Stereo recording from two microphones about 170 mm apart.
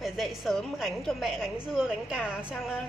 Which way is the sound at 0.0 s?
Centre (ahead or behind).